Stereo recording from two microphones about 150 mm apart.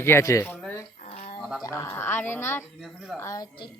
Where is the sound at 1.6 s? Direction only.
20° left (ahead or behind).